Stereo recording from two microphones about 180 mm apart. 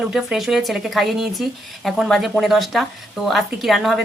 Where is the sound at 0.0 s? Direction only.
5° right (ahead or behind).